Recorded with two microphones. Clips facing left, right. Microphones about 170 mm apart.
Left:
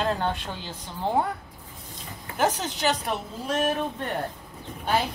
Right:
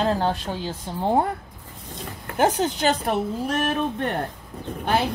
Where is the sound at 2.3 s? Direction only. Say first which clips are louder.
Right 5 dB; 55° right (ahead or behind).